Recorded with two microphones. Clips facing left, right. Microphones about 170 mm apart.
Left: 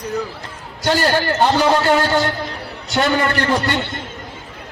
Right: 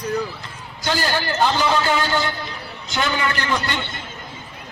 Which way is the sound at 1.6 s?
40° left (ahead or behind).